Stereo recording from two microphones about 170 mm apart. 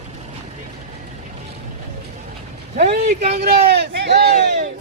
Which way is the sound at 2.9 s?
65° right (ahead or behind).